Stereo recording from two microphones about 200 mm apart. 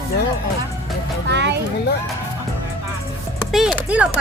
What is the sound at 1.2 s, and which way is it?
Speech, 60° right (ahead or behind).